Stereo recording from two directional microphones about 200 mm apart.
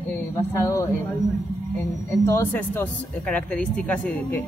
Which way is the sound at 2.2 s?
10° left (ahead or behind).